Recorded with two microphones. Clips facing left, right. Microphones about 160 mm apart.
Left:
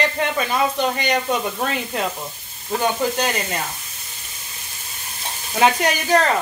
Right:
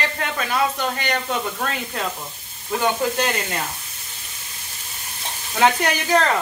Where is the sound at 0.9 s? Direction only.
20° left (ahead or behind).